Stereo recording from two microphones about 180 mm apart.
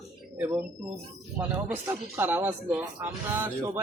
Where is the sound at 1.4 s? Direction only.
10° right (ahead or behind).